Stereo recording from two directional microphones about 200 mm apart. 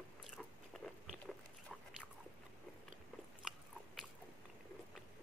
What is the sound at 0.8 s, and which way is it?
Biting, centre (ahead or behind).